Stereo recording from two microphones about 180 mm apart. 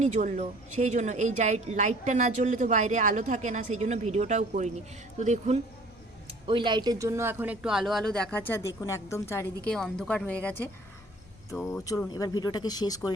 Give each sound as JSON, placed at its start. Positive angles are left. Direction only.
{"t": 0.0, "sound": "a woman's voice", "side_deg": -45}
{"t": 6.5, "sound": "speech", "side_deg": -25}
{"t": 9.6, "sound": "a woman's voice", "side_deg": 5}